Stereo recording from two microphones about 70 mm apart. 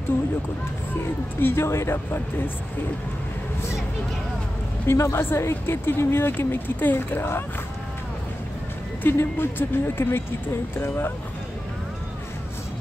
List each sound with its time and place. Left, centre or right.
1.4 s a woman's voice: left
4.8 s a woman's voice: left
9.0 s a woman's voice: left